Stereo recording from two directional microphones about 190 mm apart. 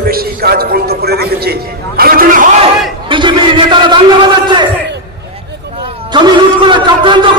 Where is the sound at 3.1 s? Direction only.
25° right (ahead or behind).